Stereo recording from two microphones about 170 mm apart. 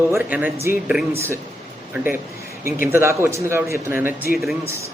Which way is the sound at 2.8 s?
15° right (ahead or behind).